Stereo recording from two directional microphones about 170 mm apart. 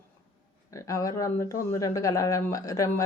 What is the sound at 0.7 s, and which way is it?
A woman's voice, 20° left (ahead or behind).